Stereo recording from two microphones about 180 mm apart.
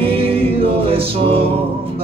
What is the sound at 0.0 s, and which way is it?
Music, 30° right (ahead or behind).